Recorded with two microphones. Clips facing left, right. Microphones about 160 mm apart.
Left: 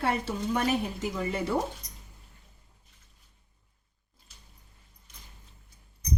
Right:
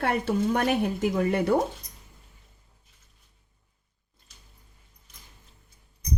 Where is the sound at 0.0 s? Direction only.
60° right (ahead or behind).